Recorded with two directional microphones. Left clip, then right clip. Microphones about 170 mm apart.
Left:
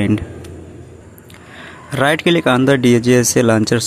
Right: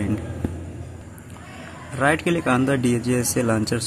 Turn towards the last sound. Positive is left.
turn(degrees=35)  # may be behind; listen again after turning